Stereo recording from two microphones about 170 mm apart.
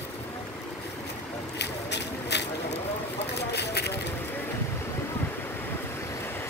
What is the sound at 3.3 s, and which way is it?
Vehicle, 75° left (ahead or behind).